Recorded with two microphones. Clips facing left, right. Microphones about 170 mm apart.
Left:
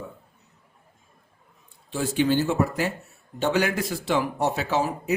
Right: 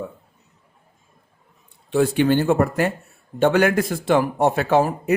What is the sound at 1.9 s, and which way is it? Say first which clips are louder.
Speech: right 6 dB; 60° right (ahead or behind).